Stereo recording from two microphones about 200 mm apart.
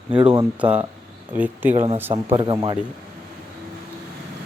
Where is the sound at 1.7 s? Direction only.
35° right (ahead or behind).